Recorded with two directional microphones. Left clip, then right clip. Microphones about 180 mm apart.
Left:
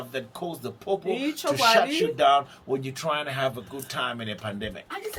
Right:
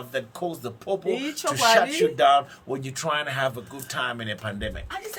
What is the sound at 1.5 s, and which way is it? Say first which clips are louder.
Speech: right 1 dB; 10° right (ahead or behind).